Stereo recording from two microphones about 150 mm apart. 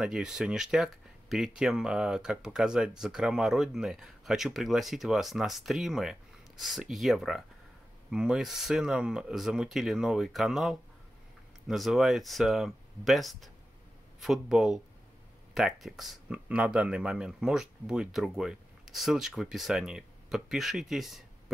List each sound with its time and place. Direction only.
0.0 s speech: 5° right (ahead or behind)